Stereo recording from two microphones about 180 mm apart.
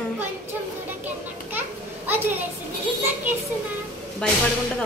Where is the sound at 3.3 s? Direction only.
10° right (ahead or behind).